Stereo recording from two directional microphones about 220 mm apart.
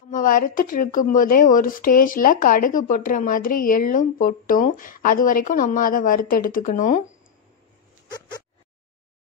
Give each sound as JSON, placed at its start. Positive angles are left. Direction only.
{"t": 0.1, "sound": "speech", "side_deg": 40}